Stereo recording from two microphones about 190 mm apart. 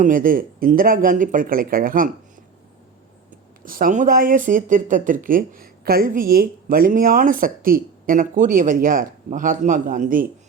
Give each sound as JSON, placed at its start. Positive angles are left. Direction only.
{"t": 0.0, "sound": "speech", "side_deg": -45}
{"t": 3.6, "sound": "speech", "side_deg": -45}